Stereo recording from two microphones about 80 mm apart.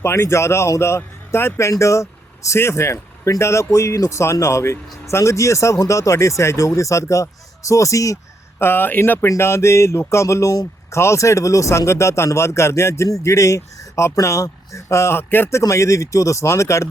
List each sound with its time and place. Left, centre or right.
0.0 s speech: left
8.5 s speech: left